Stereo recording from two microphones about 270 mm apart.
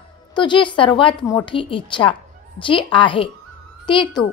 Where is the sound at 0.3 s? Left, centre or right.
Centre.